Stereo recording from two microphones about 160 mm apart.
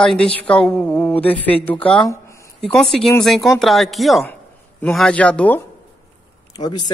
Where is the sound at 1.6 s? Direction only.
10° left (ahead or behind).